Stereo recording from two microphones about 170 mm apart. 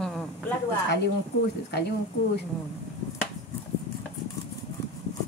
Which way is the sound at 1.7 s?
75° left (ahead or behind).